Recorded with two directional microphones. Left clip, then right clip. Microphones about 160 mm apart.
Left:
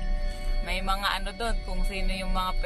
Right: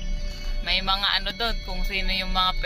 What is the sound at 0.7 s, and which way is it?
Speech, 10° left (ahead or behind).